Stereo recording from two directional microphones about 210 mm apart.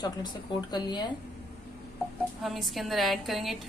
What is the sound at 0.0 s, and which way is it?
A woman's voice, 20° left (ahead or behind).